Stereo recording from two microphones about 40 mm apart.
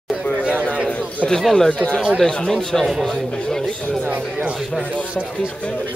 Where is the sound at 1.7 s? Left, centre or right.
Left.